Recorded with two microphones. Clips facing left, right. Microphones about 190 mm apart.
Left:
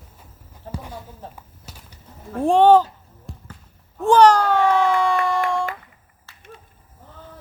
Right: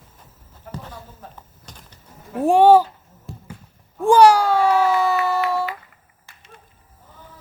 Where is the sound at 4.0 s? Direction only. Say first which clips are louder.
Right 1 dB; 10° right (ahead or behind).